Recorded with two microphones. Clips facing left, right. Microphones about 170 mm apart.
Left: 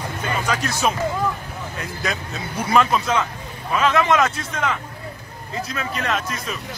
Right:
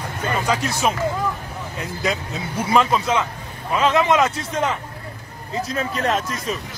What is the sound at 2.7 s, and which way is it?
Speech, 20° right (ahead or behind).